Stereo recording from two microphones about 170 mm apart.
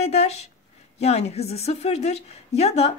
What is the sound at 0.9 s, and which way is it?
A woman's voice, 40° left (ahead or behind).